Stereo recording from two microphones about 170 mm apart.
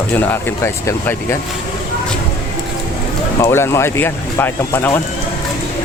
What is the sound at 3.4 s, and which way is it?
Speech, 15° left (ahead or behind).